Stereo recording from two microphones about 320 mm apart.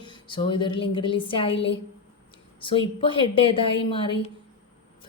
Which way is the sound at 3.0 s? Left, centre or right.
Centre.